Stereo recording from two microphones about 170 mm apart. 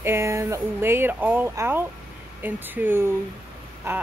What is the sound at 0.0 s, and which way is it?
Speech, 15° right (ahead or behind).